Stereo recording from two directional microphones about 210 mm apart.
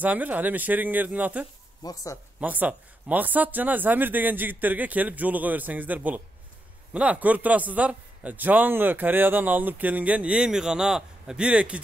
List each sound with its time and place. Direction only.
0.0 s a man's voice: 5° right (ahead or behind)
1.8 s speech: 15° left (ahead or behind)
2.4 s a man's voice: 5° right (ahead or behind)